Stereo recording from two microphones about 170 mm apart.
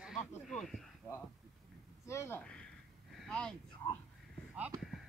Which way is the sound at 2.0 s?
15° left (ahead or behind).